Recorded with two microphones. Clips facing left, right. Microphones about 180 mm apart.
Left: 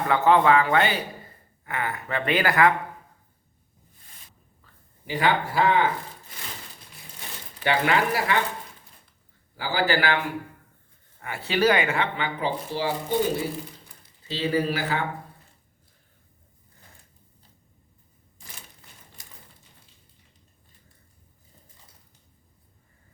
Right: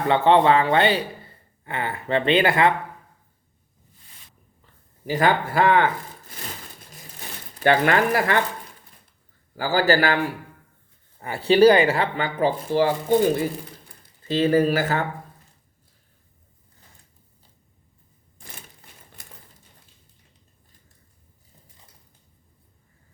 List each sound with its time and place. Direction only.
0.1 s speech: 30° right (ahead or behind)
5.0 s speech: 45° right (ahead or behind)
7.6 s speech: 50° right (ahead or behind)
9.6 s speech: 45° right (ahead or behind)
11.2 s speech: 30° right (ahead or behind); by 13.1 s 50° right (ahead or behind)
14.3 s speech: 50° right (ahead or behind)
19.2 s a sound: 55° right (ahead or behind)